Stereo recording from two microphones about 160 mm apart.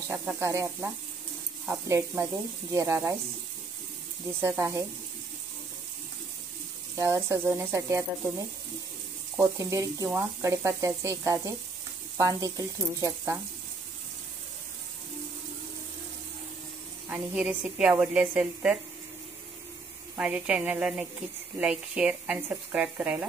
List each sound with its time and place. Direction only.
0.1 s a woman's voice: 15° right (ahead or behind)
4.4 s a woman's voice: 20° right (ahead or behind)
7.0 s a woman's voice: 15° right (ahead or behind)
9.6 s speech: 20° right (ahead or behind)
17.1 s a woman's voice: 10° right (ahead or behind)
20.2 s a woman's voice: 5° right (ahead or behind)